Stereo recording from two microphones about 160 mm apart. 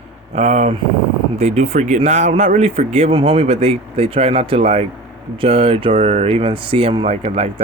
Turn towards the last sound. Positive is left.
turn(degrees=-40)  # may be behind; listen again after turning